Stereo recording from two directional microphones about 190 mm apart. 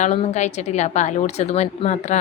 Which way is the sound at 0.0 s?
35° left (ahead or behind).